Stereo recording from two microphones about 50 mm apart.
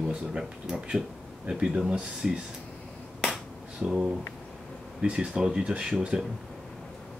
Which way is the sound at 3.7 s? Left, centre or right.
Centre.